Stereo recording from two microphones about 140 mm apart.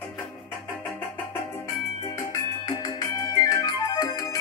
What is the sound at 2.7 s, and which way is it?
Music, 25° left (ahead or behind).